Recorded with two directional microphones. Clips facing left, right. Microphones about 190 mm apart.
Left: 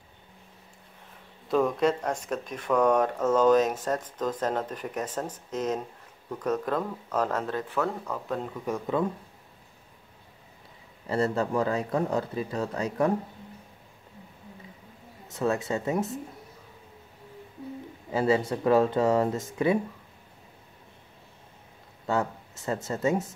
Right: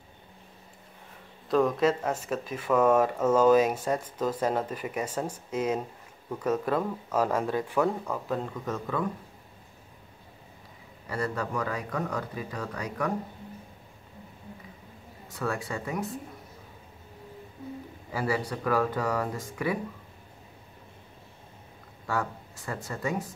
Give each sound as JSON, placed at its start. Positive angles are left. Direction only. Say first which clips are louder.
{"t": 1.5, "sound": "speech", "louder": "even", "side_deg": 0}
{"t": 11.1, "sound": "speech", "louder": "left 5 dB", "side_deg": 25}
{"t": 15.2, "sound": "speech", "louder": "left 5 dB", "side_deg": 20}
{"t": 18.1, "sound": "speech", "louder": "left 5 dB", "side_deg": 25}
{"t": 22.0, "sound": "speech", "louder": "left 4 dB", "side_deg": 25}